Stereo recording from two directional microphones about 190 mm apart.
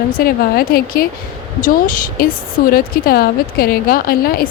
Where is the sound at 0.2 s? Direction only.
50° left (ahead or behind).